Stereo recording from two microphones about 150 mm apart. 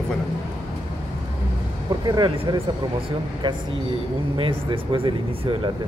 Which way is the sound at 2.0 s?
30° right (ahead or behind).